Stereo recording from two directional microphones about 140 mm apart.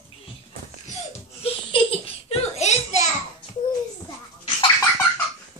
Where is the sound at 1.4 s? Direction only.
40° left (ahead or behind).